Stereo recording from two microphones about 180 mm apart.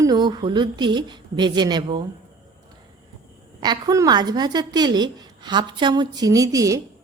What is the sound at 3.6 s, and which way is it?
A woman's voice, 20° right (ahead or behind).